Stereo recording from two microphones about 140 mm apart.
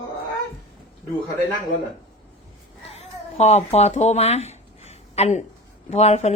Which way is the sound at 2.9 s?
50° left (ahead or behind).